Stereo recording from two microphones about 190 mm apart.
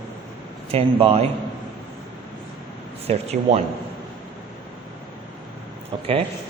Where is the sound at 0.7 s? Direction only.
30° right (ahead or behind).